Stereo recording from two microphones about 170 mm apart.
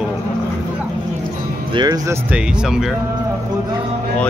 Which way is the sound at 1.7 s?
25° right (ahead or behind).